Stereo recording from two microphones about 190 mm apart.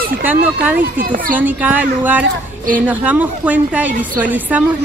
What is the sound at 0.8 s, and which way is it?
Speech, 45° right (ahead or behind).